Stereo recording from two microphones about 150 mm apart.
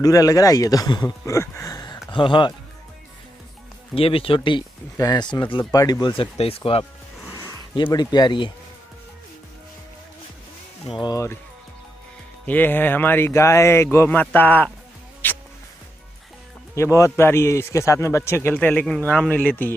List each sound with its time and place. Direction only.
0.0 s speech: 25° left (ahead or behind)
3.9 s speech: 40° left (ahead or behind)
6.3 s speech: 40° left (ahead or behind)
11.0 s speech: 25° left (ahead or behind)
12.4 s a man's voice: 10° left (ahead or behind)
16.7 s a man's voice: 20° left (ahead or behind)